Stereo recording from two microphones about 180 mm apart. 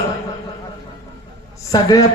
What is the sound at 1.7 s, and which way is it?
Speech, 20° left (ahead or behind).